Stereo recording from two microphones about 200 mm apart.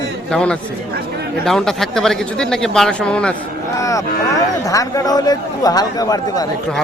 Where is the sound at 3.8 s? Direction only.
15° left (ahead or behind).